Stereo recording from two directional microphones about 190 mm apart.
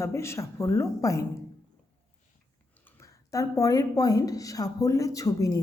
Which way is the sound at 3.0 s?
15° left (ahead or behind).